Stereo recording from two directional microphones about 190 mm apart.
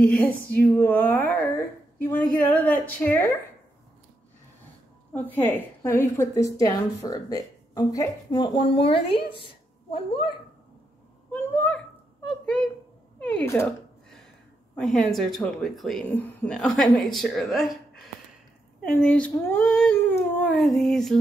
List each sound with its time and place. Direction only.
0.1 s a woman's voice: 10° left (ahead or behind)
5.1 s a woman's voice: 10° left (ahead or behind); by 10.2 s 30° left (ahead or behind)
11.3 s a woman's voice: 10° left (ahead or behind)
14.8 s speech: centre (ahead or behind)